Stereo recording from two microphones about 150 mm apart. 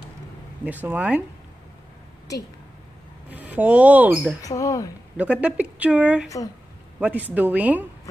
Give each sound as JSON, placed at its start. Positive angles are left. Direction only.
{"t": 0.7, "sound": "speech", "side_deg": -10}
{"t": 3.3, "sound": "speech", "side_deg": -10}
{"t": 4.4, "sound": "speech", "side_deg": 20}
{"t": 5.1, "sound": "speech", "side_deg": -10}